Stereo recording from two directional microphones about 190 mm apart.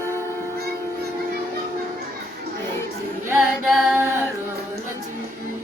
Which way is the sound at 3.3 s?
5° right (ahead or behind).